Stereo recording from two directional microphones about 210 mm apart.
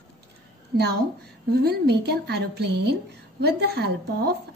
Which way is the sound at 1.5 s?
50° right (ahead or behind).